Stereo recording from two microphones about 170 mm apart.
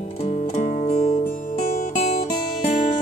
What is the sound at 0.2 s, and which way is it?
Music, 40° left (ahead or behind).